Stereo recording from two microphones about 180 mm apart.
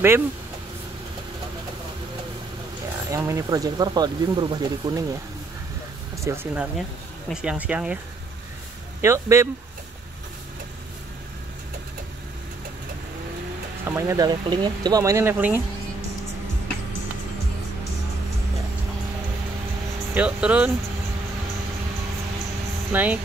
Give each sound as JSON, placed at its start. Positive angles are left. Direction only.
{"t": 3.1, "sound": "speech", "side_deg": -15}
{"t": 6.2, "sound": "speech", "side_deg": -10}
{"t": 9.0, "sound": "speech", "side_deg": -15}
{"t": 13.8, "sound": "speech", "side_deg": -15}
{"t": 20.2, "sound": "speech", "side_deg": -5}
{"t": 22.9, "sound": "speech", "side_deg": -10}